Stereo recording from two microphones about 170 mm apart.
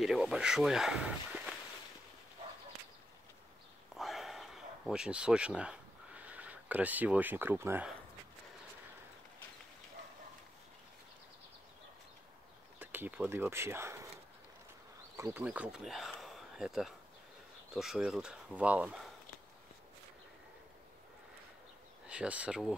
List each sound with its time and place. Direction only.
0.0 s speech: centre (ahead or behind)
3.9 s a sound: centre (ahead or behind)
12.7 s speech: 10° right (ahead or behind)
15.1 s speech: 20° right (ahead or behind)
15.4 s speech: 5° right (ahead or behind)
22.0 s speech: 5° right (ahead or behind)